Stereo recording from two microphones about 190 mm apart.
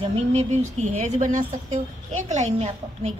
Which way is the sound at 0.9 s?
40° right (ahead or behind).